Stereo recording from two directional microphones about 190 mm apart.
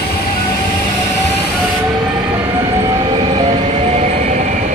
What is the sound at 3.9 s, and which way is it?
Train, 40° right (ahead or behind).